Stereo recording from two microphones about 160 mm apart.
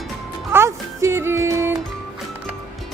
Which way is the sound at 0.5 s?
15° right (ahead or behind).